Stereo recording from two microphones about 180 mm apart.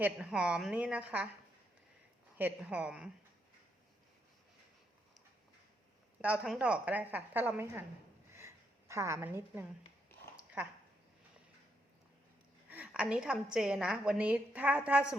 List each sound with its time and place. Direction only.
0.0 s a woman's voice: 5° right (ahead or behind)
2.4 s a woman's voice: 10° right (ahead or behind)
6.2 s a woman's voice: 5° right (ahead or behind)
8.3 s a sound: 15° right (ahead or behind)
10.3 s dog: 10° right (ahead or behind)
12.7 s a woman's voice: 5° right (ahead or behind)